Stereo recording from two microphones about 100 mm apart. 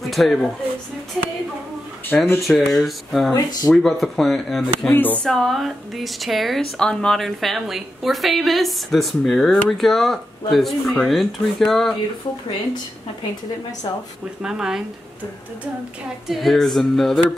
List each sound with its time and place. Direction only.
0.0 s speech: centre (ahead or behind)
2.1 s speech: 5° left (ahead or behind)
4.9 s speech: 20° left (ahead or behind)
5.2 s speech: 5° left (ahead or behind)
14.4 s speech: 5° right (ahead or behind)
16.3 s speech: centre (ahead or behind)